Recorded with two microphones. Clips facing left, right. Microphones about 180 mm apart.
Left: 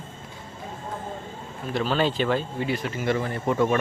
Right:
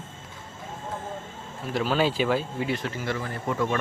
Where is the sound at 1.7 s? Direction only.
5° right (ahead or behind).